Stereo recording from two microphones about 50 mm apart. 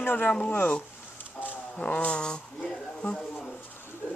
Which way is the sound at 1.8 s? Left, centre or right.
Left.